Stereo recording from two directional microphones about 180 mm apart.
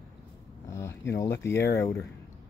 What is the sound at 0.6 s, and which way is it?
Speech, 15° left (ahead or behind).